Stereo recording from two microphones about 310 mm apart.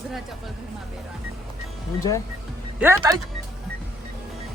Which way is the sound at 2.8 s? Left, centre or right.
Centre.